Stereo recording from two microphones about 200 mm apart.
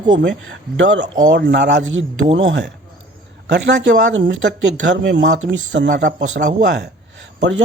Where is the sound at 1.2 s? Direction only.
60° right (ahead or behind).